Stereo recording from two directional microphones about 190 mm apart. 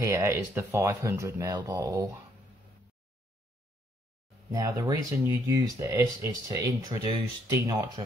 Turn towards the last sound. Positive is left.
turn(degrees=-20)  # may be behind; listen again after turning